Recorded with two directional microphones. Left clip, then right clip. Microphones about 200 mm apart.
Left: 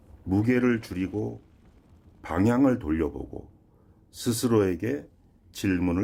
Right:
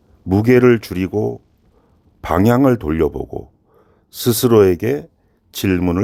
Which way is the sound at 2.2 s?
50° right (ahead or behind).